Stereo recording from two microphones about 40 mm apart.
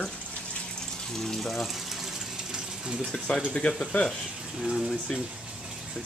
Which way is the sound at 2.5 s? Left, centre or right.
Right.